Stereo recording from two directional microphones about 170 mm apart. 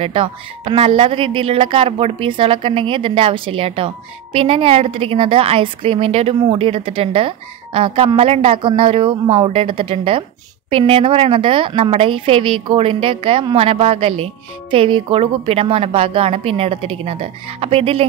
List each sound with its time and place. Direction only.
0.0 s a woman's voice: 35° right (ahead or behind)